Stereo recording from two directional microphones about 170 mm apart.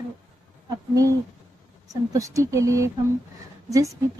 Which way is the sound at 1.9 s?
20° right (ahead or behind).